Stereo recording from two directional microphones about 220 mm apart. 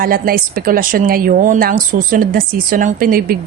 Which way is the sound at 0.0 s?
40° right (ahead or behind).